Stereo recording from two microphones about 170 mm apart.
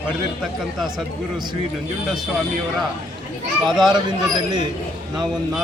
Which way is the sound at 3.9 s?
25° right (ahead or behind).